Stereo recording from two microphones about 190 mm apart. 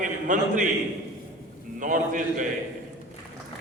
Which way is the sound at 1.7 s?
45° right (ahead or behind).